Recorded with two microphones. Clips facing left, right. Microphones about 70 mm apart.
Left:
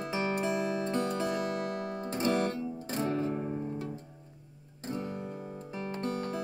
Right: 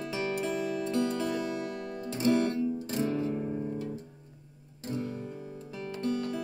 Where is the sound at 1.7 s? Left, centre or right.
Left.